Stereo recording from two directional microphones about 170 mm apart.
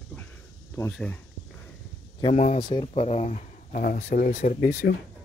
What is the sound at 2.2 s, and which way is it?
Speech, 40° left (ahead or behind).